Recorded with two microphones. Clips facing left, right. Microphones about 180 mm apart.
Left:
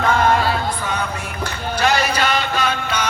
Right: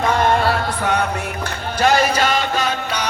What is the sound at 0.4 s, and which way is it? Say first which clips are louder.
Music: right 2 dB; 70° right (ahead or behind).